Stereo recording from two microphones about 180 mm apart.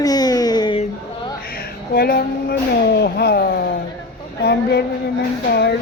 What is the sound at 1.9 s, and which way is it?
Speech, 60° left (ahead or behind).